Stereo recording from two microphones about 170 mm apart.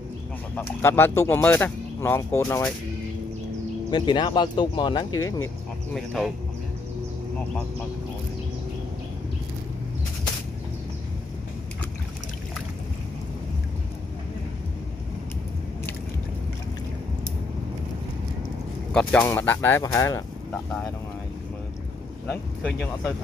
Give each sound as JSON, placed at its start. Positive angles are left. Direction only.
{"t": 0.6, "sound": "speech", "side_deg": 15}
{"t": 3.9, "sound": "speech", "side_deg": 25}
{"t": 5.9, "sound": "speech", "side_deg": 0}
{"t": 19.2, "sound": "speech", "side_deg": 15}
{"t": 20.5, "sound": "speech", "side_deg": 5}
{"t": 22.3, "sound": "speech", "side_deg": 0}